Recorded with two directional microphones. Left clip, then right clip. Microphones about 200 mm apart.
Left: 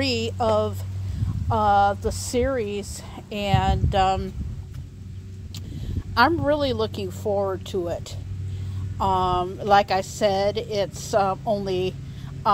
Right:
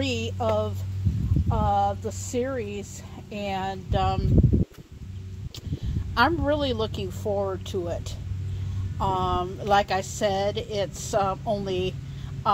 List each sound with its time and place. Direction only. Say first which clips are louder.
0.0 s speech: left 4 dB; 10° left (ahead or behind)
6.1 s speech: left 3 dB; 5° left (ahead or behind)